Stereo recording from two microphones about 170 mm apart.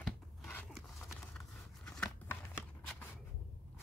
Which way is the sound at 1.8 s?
5° left (ahead or behind).